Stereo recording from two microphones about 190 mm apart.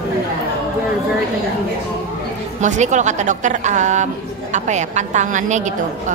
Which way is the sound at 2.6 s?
40° right (ahead or behind).